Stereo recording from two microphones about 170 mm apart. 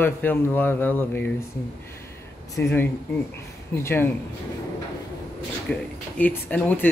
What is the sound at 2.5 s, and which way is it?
Speech, 10° left (ahead or behind).